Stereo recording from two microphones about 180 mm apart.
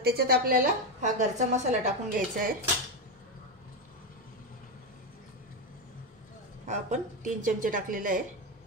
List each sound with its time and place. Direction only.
0.0 s a woman's voice: 60° right (ahead or behind)
6.6 s a woman's voice: 40° right (ahead or behind)